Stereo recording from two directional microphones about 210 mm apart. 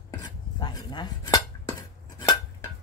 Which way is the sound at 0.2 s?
20° left (ahead or behind).